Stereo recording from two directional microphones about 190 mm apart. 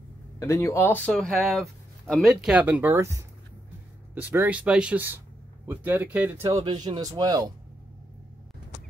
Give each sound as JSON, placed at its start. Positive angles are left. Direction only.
{"t": 0.4, "sound": "speech", "side_deg": 15}
{"t": 6.6, "sound": "speech", "side_deg": -25}